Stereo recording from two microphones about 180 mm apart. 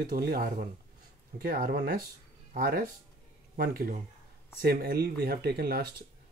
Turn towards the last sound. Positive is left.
turn(degrees=-60)  # may be behind; listen again after turning